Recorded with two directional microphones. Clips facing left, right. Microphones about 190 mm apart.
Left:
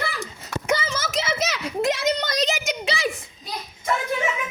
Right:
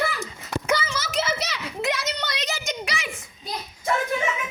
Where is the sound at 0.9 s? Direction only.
45° left (ahead or behind).